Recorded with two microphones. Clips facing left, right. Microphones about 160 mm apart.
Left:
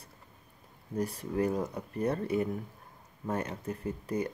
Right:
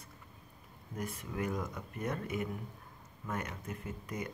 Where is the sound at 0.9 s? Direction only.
35° left (ahead or behind).